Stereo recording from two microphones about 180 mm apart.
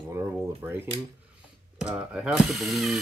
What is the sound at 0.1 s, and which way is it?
Speech, 15° right (ahead or behind).